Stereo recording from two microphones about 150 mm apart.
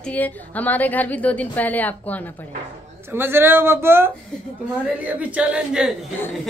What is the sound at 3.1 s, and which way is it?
Speech, 15° right (ahead or behind).